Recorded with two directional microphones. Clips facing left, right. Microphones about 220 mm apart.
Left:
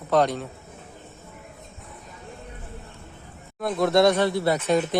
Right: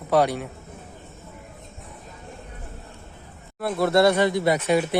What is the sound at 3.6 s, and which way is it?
Speech, 5° right (ahead or behind).